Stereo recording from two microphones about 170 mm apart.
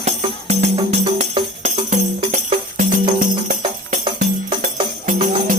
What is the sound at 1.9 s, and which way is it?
Music, 45° right (ahead or behind).